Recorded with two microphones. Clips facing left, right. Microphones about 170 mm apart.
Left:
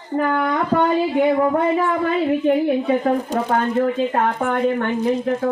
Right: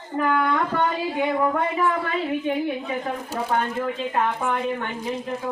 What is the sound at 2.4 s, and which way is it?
Speech, 45° left (ahead or behind).